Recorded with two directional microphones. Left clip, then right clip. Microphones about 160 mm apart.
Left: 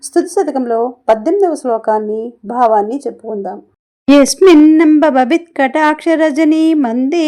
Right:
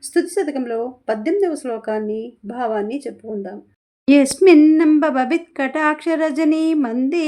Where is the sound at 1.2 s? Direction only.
15° left (ahead or behind).